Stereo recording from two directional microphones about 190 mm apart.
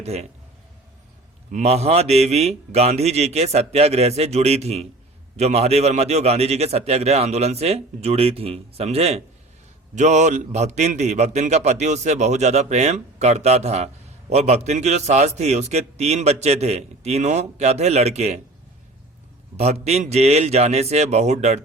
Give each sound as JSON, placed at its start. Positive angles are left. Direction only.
{"t": 0.0, "sound": "a man's voice", "side_deg": -35}
{"t": 1.5, "sound": "a man's voice", "side_deg": -35}
{"t": 19.5, "sound": "a man's voice", "side_deg": -35}